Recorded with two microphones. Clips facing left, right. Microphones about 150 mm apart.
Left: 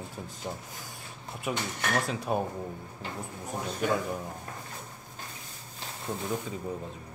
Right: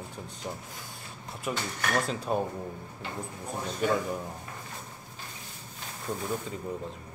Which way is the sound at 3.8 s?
Centre (ahead or behind).